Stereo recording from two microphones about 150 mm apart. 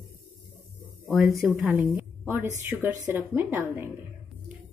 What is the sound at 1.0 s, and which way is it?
Speech, centre (ahead or behind).